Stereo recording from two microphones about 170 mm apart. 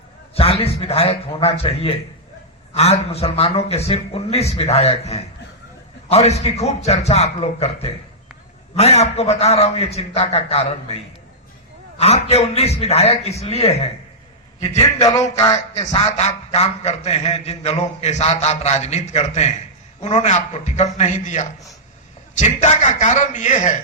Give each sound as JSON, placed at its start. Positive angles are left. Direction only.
{"t": 0.3, "sound": "a man's voice", "side_deg": 35}
{"t": 15.0, "sound": "a sound", "side_deg": 20}
{"t": 16.0, "sound": "a man's voice", "side_deg": 40}